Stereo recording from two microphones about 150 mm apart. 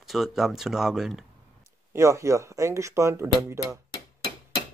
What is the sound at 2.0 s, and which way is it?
Speech, 20° right (ahead or behind).